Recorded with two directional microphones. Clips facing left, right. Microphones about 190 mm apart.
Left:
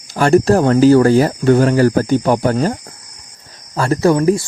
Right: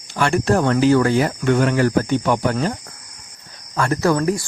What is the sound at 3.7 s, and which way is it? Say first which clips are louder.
Speech: left 4 dB; 30° left (ahead or behind).